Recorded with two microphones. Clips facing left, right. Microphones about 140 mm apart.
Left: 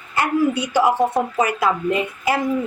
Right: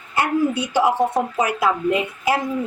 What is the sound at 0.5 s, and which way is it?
Speech, 25° right (ahead or behind).